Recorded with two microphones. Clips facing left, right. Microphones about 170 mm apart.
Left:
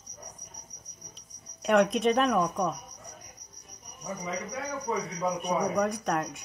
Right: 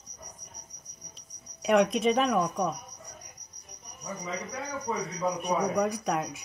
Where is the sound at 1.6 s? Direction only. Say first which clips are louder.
Even; centre (ahead or behind).